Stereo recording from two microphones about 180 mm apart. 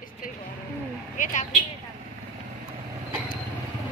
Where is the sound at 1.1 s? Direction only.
45° left (ahead or behind).